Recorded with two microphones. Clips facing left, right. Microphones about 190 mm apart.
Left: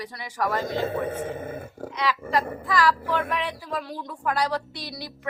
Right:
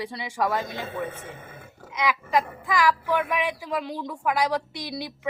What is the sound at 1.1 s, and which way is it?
Grunt, 50° left (ahead or behind).